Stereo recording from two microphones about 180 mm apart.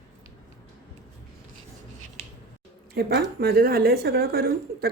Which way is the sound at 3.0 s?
60° right (ahead or behind).